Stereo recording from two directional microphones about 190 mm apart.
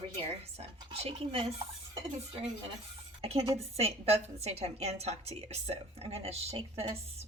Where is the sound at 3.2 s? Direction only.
35° right (ahead or behind).